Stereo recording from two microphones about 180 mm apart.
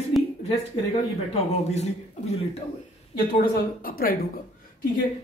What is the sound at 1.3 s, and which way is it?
Speech, 35° left (ahead or behind).